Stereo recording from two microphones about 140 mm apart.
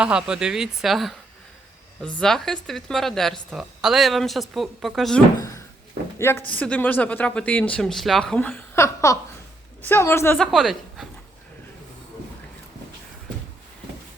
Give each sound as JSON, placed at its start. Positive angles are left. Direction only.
{"t": 0.0, "sound": "speech", "side_deg": -5}
{"t": 5.4, "sound": "a sound", "side_deg": 25}
{"t": 6.1, "sound": "a woman's voice", "side_deg": 20}
{"t": 10.3, "sound": "speech", "side_deg": 0}